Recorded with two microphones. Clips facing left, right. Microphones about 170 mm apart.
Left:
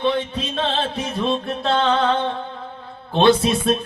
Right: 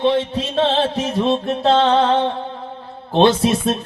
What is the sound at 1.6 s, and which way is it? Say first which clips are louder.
Music: right 5 dB; 35° right (ahead or behind).